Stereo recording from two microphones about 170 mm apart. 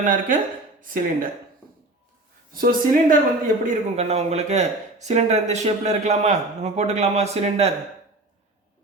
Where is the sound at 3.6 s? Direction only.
40° right (ahead or behind).